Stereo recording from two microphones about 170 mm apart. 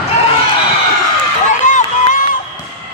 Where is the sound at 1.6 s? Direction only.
45° left (ahead or behind).